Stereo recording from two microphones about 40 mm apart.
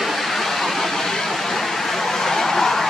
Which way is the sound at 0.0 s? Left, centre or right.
Centre.